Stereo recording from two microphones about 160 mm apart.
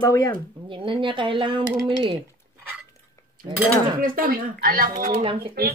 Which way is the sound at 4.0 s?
65° right (ahead or behind).